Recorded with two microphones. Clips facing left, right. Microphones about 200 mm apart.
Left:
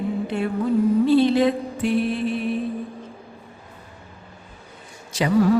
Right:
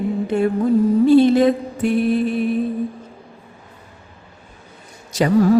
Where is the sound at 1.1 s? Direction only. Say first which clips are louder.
Right 7 dB; 45° right (ahead or behind).